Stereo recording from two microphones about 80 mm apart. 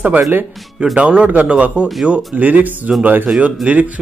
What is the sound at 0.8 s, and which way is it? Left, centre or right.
A man's voice, centre.